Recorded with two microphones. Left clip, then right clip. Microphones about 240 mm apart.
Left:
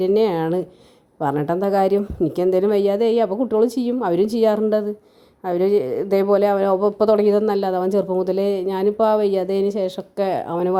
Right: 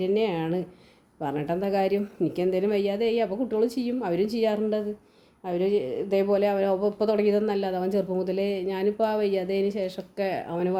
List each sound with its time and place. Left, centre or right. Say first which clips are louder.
0.0 s speech: left 8 dB; left